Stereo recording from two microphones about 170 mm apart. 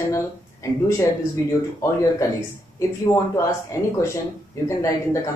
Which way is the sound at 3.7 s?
20° left (ahead or behind).